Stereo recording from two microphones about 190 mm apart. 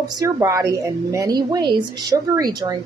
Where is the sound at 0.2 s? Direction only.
15° right (ahead or behind).